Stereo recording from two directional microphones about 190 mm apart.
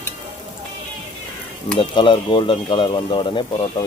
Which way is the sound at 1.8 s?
25° left (ahead or behind).